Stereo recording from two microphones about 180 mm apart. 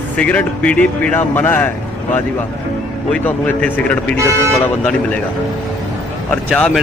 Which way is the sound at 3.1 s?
10° left (ahead or behind).